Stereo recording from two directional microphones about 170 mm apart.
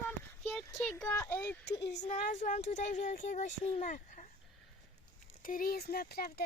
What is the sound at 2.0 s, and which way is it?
Speech, 45° left (ahead or behind).